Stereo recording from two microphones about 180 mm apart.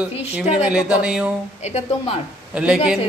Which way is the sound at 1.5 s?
40° left (ahead or behind).